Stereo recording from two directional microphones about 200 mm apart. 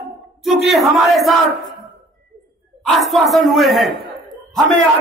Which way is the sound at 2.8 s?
Centre (ahead or behind).